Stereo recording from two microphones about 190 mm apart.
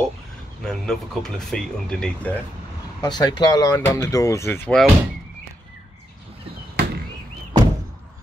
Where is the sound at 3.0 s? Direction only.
20° left (ahead or behind).